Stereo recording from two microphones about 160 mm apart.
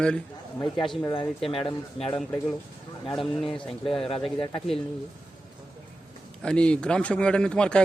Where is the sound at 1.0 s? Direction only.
20° left (ahead or behind).